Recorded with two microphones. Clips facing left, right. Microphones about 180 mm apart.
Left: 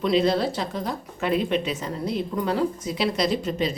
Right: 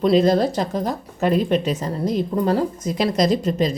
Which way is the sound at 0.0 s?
45° right (ahead or behind).